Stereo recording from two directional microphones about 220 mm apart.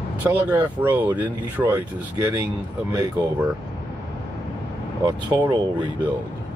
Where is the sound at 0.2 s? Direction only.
10° right (ahead or behind).